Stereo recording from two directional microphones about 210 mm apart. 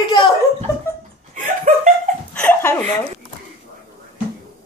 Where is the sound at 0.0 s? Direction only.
20° left (ahead or behind).